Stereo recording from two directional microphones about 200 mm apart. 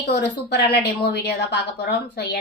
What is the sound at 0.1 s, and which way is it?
A woman's voice, 55° left (ahead or behind).